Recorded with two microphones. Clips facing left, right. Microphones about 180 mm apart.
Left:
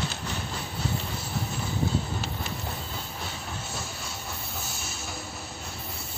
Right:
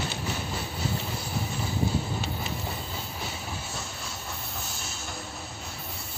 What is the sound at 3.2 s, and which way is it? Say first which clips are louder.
Train: right 1 dB; centre (ahead or behind).